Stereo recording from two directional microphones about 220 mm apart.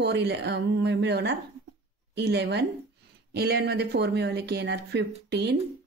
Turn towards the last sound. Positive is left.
turn(degrees=-50)  # may be behind; listen again after turning